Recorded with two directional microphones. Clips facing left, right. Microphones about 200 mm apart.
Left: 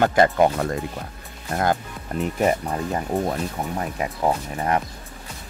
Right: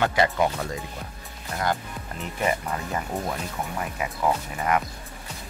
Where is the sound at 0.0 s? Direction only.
50° left (ahead or behind).